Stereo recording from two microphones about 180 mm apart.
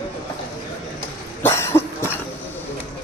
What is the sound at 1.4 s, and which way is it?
Cough, 15° left (ahead or behind).